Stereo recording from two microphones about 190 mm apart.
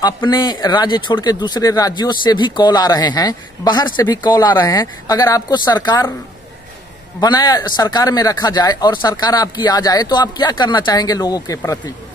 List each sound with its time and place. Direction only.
0.0 s speech: 20° left (ahead or behind)
7.2 s speech: 20° left (ahead or behind)